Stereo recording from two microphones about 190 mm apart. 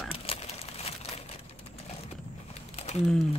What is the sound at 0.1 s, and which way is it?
Crumpling, 30° left (ahead or behind).